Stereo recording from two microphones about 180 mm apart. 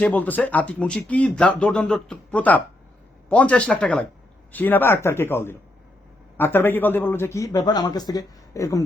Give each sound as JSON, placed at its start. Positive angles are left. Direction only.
{"t": 0.0, "sound": "speech", "side_deg": 10}